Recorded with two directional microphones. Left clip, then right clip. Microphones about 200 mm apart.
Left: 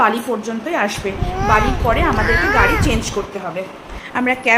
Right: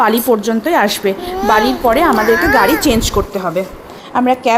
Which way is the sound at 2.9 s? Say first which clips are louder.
Right 7 dB; 55° right (ahead or behind).